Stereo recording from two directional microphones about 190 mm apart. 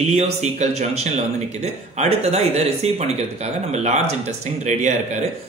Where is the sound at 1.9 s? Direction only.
35° right (ahead or behind).